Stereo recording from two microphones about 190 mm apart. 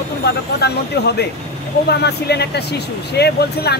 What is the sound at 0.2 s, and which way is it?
Speech, 60° left (ahead or behind).